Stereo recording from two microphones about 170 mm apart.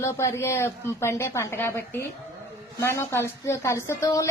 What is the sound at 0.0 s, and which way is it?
A woman's voice, 15° left (ahead or behind).